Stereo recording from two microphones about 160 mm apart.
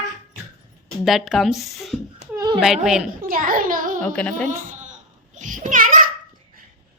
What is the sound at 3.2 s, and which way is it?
Speech, 60° right (ahead or behind).